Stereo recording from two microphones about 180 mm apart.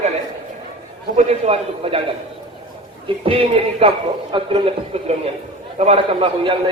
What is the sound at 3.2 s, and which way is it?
A man's voice, 30° right (ahead or behind).